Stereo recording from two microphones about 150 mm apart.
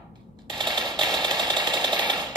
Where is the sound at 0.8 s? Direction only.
5° left (ahead or behind).